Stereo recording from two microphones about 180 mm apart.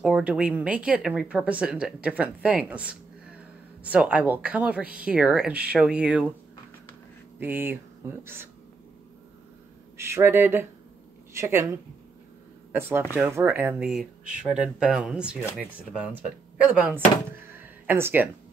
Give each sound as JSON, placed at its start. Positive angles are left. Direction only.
{"t": 0.0, "sound": "speech", "side_deg": -5}
{"t": 7.3, "sound": "speech", "side_deg": -10}
{"t": 9.9, "sound": "speech", "side_deg": -15}
{"t": 16.7, "sound": "speech", "side_deg": -10}
{"t": 17.5, "sound": "a sound", "side_deg": -10}